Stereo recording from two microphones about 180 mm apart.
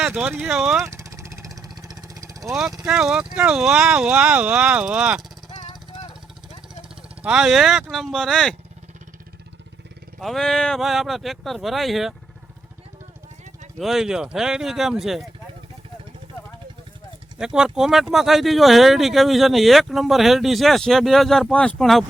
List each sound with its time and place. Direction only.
0.0 s speech: 5° right (ahead or behind)
0.8 s vehicle: 15° right (ahead or behind)
2.5 s speech: centre (ahead or behind)
5.5 s vehicle: 35° left (ahead or behind)
7.2 s speech: 5° right (ahead or behind)
10.2 s speech: centre (ahead or behind)
13.7 s speech: centre (ahead or behind)
17.4 s speech: 5° right (ahead or behind)